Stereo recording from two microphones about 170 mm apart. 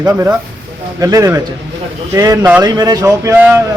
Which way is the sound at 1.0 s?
20° right (ahead or behind).